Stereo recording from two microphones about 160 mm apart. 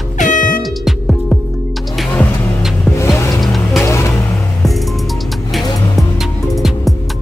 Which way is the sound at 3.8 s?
15° left (ahead or behind).